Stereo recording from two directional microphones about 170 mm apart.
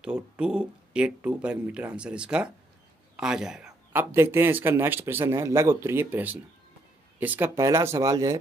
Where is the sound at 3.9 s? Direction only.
15° right (ahead or behind).